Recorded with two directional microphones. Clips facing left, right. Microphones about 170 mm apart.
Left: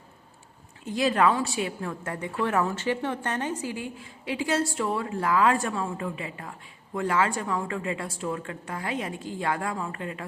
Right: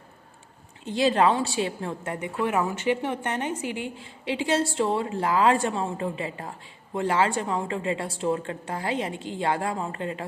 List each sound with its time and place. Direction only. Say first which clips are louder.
0.9 s a woman's voice: right 2 dB; 25° right (ahead or behind)